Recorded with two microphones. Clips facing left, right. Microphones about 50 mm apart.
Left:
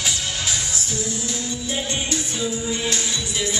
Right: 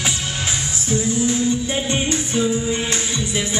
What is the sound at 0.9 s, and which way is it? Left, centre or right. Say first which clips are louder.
Music: right 12 dB; right.